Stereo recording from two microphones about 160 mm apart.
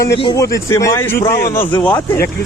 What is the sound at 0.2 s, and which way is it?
Speech, 25° left (ahead or behind).